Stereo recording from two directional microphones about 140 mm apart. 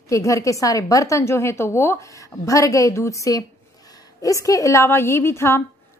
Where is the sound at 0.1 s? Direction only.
20° left (ahead or behind).